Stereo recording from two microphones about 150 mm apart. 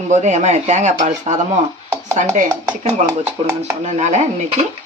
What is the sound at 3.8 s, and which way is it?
Speech, 50° right (ahead or behind).